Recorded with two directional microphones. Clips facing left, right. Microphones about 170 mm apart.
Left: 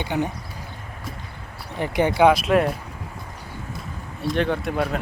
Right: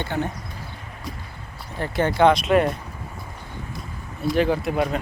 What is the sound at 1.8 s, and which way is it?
Speech, 15° left (ahead or behind).